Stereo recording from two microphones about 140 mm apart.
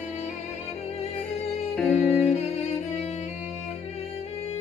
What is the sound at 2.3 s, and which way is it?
Music, 55° left (ahead or behind).